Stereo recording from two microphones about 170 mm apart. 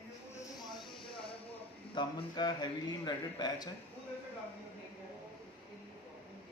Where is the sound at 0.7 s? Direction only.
30° left (ahead or behind).